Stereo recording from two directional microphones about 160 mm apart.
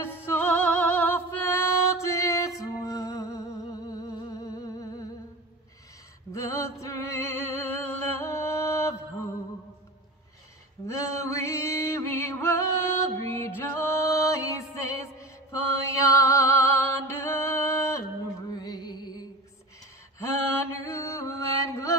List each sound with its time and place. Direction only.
0.0 s music: 15° left (ahead or behind)
6.3 s music: 20° left (ahead or behind)
10.9 s music: 20° left (ahead or behind)
20.2 s mantra: 15° left (ahead or behind)